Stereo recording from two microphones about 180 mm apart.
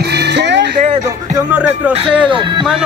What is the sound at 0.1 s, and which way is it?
Vehicle, 70° right (ahead or behind).